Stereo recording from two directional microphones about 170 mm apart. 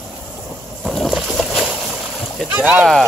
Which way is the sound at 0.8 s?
Centre (ahead or behind).